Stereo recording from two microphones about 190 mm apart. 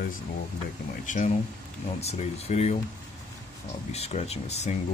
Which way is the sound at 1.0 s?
40° left (ahead or behind).